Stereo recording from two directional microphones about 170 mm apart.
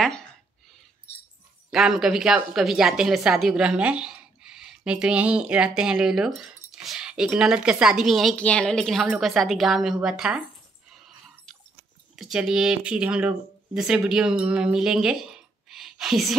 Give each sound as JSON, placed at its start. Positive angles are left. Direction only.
{"t": 1.7, "sound": "a woman's voice", "side_deg": 0}
{"t": 10.9, "sound": "a sound", "side_deg": 0}
{"t": 12.2, "sound": "speech", "side_deg": 0}